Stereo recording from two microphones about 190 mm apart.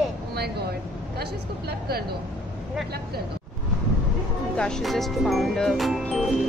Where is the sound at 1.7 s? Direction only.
55° right (ahead or behind).